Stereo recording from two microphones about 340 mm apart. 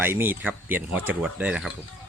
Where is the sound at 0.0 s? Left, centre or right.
Centre.